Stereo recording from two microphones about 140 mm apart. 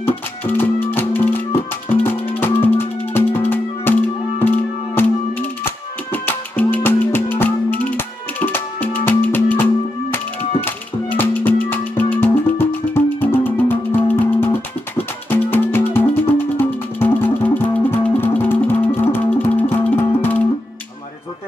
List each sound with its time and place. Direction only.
0.5 s music: 15° left (ahead or behind)
6.2 s music: 10° left (ahead or behind)